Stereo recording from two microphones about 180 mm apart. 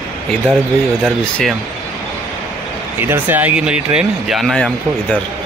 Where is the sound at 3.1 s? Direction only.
10° right (ahead or behind).